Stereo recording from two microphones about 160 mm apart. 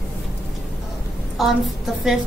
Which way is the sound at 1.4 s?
Centre (ahead or behind).